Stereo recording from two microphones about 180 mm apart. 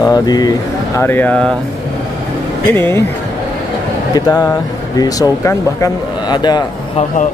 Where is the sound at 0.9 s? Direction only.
10° left (ahead or behind).